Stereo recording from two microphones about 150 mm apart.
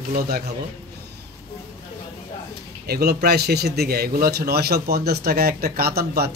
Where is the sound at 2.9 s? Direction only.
90° right.